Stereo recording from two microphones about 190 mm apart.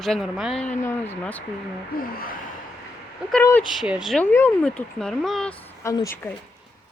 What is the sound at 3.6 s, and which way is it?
Speech, 5° right (ahead or behind).